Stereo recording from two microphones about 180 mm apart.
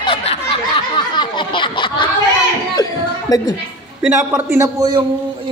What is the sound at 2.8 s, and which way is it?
Music, 20° left (ahead or behind).